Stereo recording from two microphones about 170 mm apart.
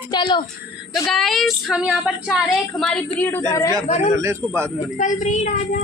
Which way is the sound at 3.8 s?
40° left (ahead or behind).